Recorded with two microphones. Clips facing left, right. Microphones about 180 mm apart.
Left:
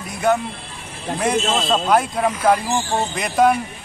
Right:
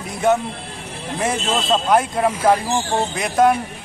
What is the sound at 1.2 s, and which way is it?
Speech, centre (ahead or behind).